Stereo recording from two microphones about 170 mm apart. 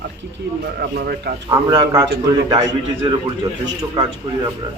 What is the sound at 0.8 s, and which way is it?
Speech, 70° right (ahead or behind).